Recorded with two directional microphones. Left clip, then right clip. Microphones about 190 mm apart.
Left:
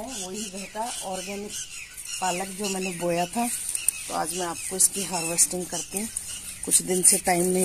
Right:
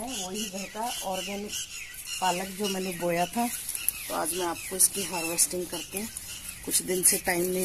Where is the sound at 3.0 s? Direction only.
35° left (ahead or behind).